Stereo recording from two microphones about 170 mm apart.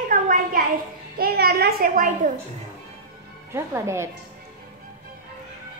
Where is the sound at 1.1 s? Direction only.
65° right (ahead or behind).